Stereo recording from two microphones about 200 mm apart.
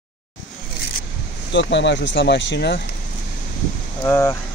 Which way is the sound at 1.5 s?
60° left (ahead or behind).